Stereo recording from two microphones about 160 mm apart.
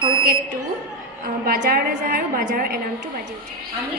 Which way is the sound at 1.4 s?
70° right (ahead or behind).